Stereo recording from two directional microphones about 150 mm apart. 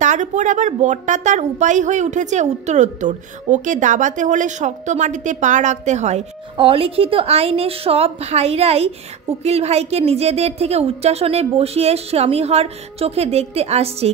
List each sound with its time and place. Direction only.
0.0 s a woman's voice: 55° right (ahead or behind)
6.5 s a woman's voice: 35° right (ahead or behind)